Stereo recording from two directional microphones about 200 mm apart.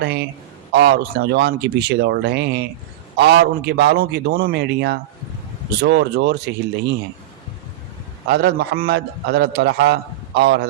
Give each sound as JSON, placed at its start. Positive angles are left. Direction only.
{"t": 0.0, "sound": "a man's voice", "side_deg": -55}
{"t": 8.3, "sound": "a man's voice", "side_deg": -55}